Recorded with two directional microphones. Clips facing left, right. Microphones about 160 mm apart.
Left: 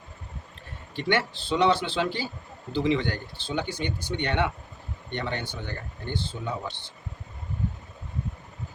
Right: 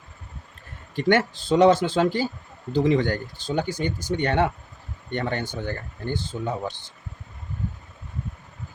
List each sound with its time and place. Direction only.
0.9 s speech: 45° right (ahead or behind)